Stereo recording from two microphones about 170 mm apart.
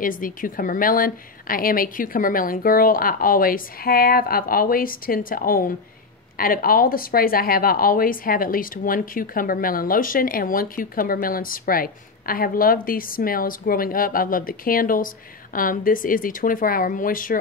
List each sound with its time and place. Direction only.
0.0 s speech: 55° left (ahead or behind)